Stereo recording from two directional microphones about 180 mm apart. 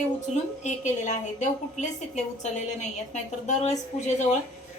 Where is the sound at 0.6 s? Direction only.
40° left (ahead or behind).